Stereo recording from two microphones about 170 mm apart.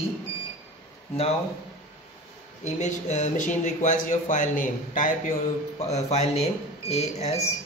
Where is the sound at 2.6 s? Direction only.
45° left (ahead or behind).